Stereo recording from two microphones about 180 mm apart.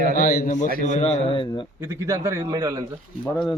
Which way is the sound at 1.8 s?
20° right (ahead or behind).